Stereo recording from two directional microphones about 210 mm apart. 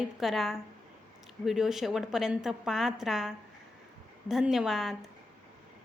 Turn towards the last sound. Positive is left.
turn(degrees=0)  # may be behind; listen again after turning